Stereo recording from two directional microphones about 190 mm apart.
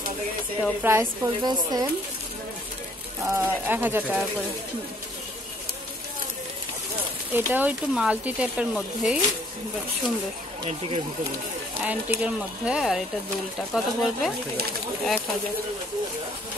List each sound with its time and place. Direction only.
0.8 s speech: 15° right (ahead or behind)
3.2 s speech: 15° right (ahead or behind)
7.3 s speech: 10° right (ahead or behind)
11.8 s speech: 5° right (ahead or behind)